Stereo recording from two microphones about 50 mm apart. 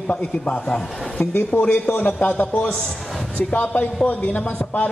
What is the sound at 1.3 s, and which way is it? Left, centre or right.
A man's voice, left.